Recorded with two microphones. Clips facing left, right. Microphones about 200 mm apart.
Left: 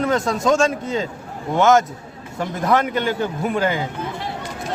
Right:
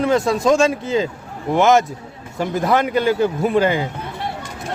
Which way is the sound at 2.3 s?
30° right (ahead or behind).